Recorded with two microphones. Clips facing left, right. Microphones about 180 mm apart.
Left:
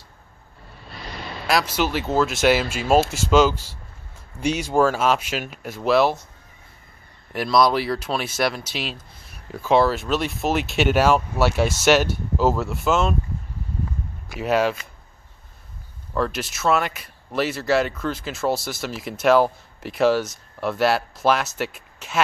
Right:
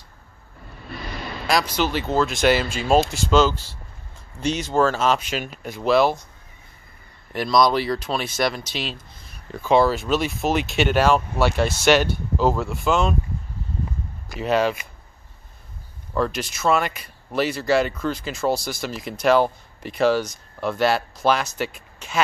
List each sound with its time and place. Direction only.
1.5 s speech: 5° left (ahead or behind)
7.3 s speech: 5° left (ahead or behind)
14.3 s speech: 5° left (ahead or behind)
16.2 s speech: 5° left (ahead or behind)